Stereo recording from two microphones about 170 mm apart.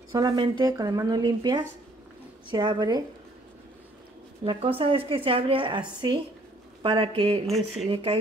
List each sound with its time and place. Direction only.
0.1 s speech: 25° right (ahead or behind)
4.5 s speech: 30° right (ahead or behind)
7.4 s speech: centre (ahead or behind)
7.9 s speech: 30° right (ahead or behind)